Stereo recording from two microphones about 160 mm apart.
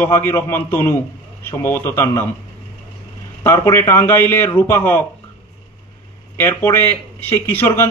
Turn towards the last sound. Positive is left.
turn(degrees=15)  # may be behind; listen again after turning